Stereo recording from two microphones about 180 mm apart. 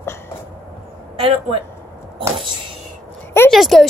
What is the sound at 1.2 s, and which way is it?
Speech, 30° right (ahead or behind).